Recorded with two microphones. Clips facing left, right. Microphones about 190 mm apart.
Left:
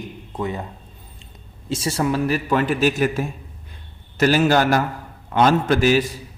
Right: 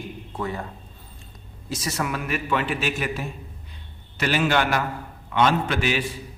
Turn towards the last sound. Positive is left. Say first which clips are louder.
# left 7 dB
turn(degrees=40)  # may be behind; listen again after turning